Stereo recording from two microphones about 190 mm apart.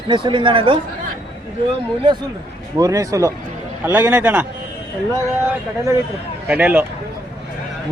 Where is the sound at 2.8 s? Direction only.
20° right (ahead or behind).